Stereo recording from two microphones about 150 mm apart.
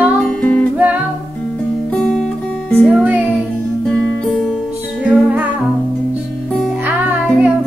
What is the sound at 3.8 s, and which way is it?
Music, 5° left (ahead or behind).